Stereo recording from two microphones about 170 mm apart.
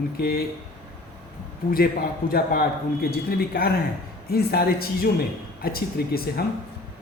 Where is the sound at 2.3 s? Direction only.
65° left (ahead or behind).